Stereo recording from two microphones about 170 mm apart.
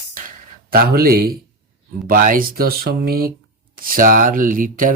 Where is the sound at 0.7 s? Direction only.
60° right (ahead or behind).